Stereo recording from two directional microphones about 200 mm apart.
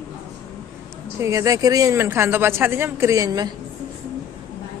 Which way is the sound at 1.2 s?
15° right (ahead or behind).